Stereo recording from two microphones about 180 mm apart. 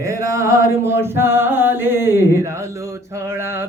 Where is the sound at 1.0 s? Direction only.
15° right (ahead or behind).